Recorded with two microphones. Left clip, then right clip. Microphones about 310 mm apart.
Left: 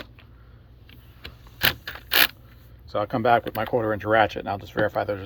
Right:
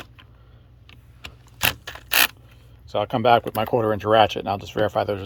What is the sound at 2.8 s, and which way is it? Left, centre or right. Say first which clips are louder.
Speech: right 3 dB; right.